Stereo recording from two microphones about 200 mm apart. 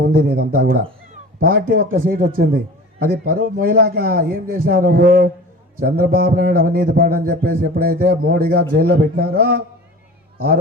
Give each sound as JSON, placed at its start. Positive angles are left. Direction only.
{"t": 0.1, "sound": "a man's voice", "side_deg": -45}